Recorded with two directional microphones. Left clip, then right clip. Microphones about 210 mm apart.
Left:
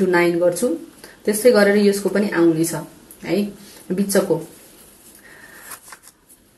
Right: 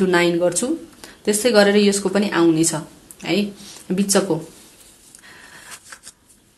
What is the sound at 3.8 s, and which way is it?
Speech, 40° right (ahead or behind).